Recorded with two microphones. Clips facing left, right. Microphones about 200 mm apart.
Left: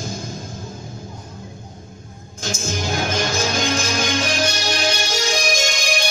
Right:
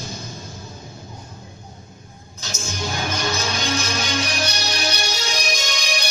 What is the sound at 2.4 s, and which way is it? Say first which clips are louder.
Music: left 4 dB; 50° left (ahead or behind).